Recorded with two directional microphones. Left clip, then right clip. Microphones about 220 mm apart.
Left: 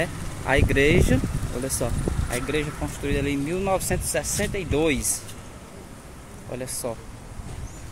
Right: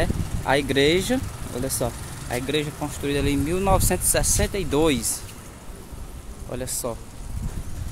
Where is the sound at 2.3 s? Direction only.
15° right (ahead or behind).